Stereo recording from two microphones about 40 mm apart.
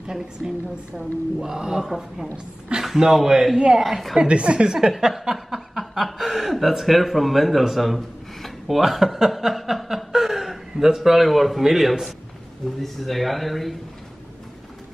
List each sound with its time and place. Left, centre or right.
0.0 s speech: centre
3.5 s a woman's voice: right
4.7 s speech: centre